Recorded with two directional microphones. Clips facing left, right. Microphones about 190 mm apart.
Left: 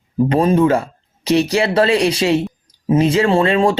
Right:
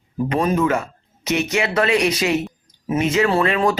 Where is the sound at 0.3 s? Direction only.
30° left (ahead or behind).